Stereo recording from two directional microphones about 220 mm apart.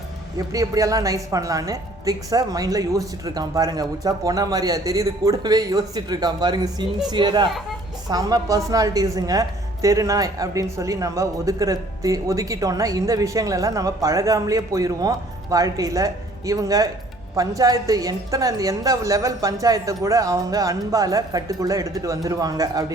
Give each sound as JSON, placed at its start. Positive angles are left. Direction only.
{"t": 0.3, "sound": "a woman's voice", "side_deg": -15}